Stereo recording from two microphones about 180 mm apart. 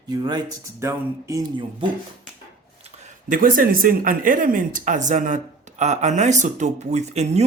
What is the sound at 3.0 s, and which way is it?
Speech, 50° right (ahead or behind).